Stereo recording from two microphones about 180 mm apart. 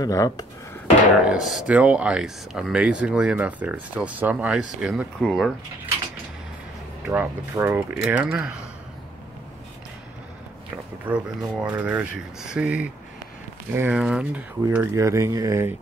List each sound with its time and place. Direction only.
0.0 s speech: 20° left (ahead or behind)
1.2 s speech: 5° right (ahead or behind)
7.1 s speech: 15° right (ahead or behind)
11.1 s speech: 5° right (ahead or behind)